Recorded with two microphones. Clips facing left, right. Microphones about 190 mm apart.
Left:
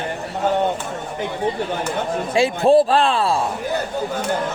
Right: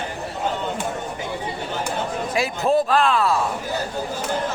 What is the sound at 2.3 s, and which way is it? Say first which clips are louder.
A man's voice: left 6 dB; 30° left (ahead or behind).